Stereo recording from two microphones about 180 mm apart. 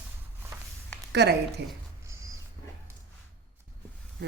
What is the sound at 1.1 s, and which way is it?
Speech, 65° right (ahead or behind).